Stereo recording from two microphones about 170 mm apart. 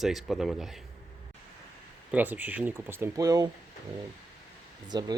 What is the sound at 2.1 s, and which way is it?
Speech, 10° right (ahead or behind).